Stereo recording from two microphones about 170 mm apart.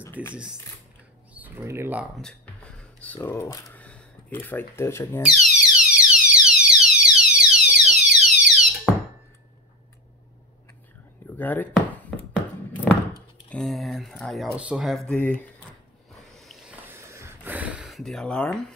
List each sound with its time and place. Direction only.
0.0 s a sound: 15° left (ahead or behind)
1.3 s speech: 10° right (ahead or behind)
2.1 s music: 5° left (ahead or behind)
3.3 s speech: 20° left (ahead or behind)
3.7 s speech: 10° left (ahead or behind)
5.2 s fire alarm: centre (ahead or behind)
8.9 s squeak: centre (ahead or behind)
11.2 s speech: 10° left (ahead or behind)
13.5 s speech: centre (ahead or behind)
16.3 s a sound: centre (ahead or behind)
16.8 s a sound: 15° right (ahead or behind); by 18.8 s 5° left (ahead or behind)